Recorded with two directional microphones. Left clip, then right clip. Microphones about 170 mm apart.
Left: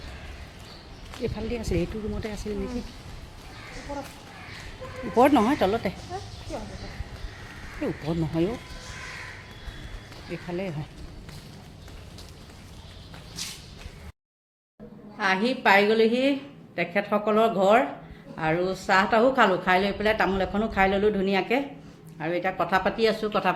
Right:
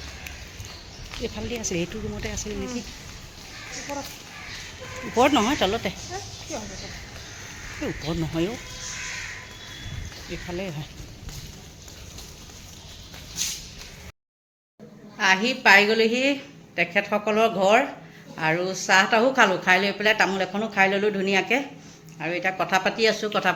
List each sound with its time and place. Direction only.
1.2 s a woman's voice: 5° right (ahead or behind)
5.1 s speech: 10° left (ahead or behind)
6.5 s speech: 45° right (ahead or behind)
7.8 s a woman's voice: centre (ahead or behind)
10.5 s a woman's voice: centre (ahead or behind)
15.2 s a woman's voice: 5° left (ahead or behind)